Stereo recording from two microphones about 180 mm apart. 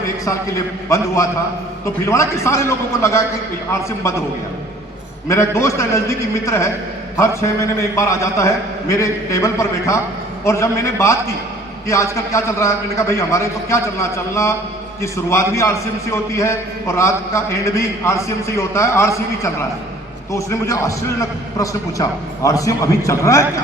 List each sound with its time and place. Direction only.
0.9 s a man's voice: 15° left (ahead or behind)
5.3 s a man's voice: 15° left (ahead or behind)
15.0 s a man's voice: 15° left (ahead or behind)